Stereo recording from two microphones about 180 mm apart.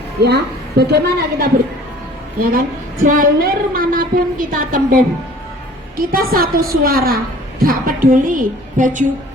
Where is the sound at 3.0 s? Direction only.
50° right (ahead or behind).